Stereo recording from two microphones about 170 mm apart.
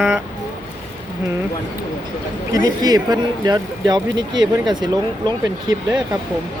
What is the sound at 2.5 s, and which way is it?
Speech, 25° right (ahead or behind).